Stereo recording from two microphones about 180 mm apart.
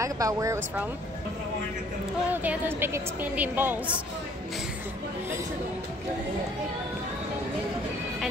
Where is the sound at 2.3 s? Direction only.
10° right (ahead or behind).